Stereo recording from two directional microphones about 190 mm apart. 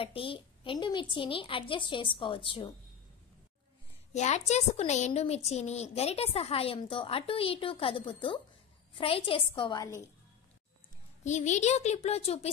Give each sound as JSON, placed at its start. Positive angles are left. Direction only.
{"t": 0.0, "sound": "a woman's voice", "side_deg": 30}
{"t": 4.1, "sound": "a woman's voice", "side_deg": 35}
{"t": 11.2, "sound": "a woman's voice", "side_deg": 40}